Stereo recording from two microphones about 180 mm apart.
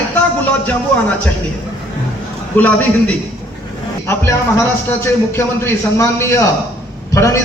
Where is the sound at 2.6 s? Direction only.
10° left (ahead or behind).